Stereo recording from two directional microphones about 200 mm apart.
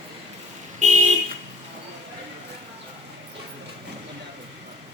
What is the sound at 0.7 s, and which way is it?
Vehicle, 35° right (ahead or behind).